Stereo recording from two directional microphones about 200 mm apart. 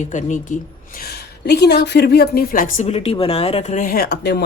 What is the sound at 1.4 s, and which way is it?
A woman's voice, 55° left (ahead or behind).